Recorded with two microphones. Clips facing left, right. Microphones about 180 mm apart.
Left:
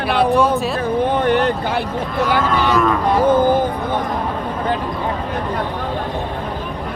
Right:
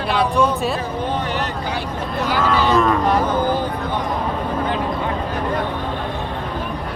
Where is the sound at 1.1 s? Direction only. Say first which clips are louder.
Left 9 dB; 55° left (ahead or behind).